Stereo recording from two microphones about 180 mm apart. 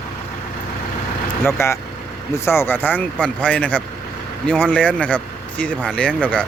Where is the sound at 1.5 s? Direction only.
15° left (ahead or behind).